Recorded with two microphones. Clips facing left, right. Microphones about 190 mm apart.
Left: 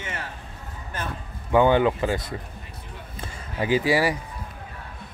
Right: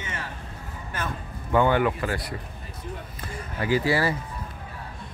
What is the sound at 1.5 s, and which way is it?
Speech, 20° left (ahead or behind).